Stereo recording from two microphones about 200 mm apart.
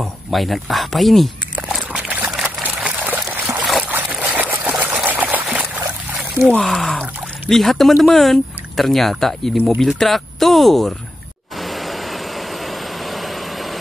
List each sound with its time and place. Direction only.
0.0 s a sound: centre (ahead or behind)
6.5 s speech: centre (ahead or behind)
11.6 s vehicle: centre (ahead or behind)